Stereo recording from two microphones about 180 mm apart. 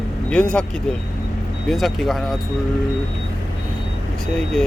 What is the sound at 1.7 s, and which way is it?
Speech, centre (ahead or behind).